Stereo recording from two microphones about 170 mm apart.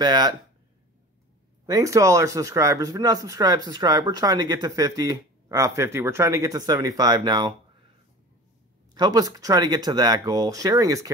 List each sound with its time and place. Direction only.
0.0 s speech: 25° right (ahead or behind)
1.7 s speech: 20° right (ahead or behind)
8.9 s speech: 25° right (ahead or behind)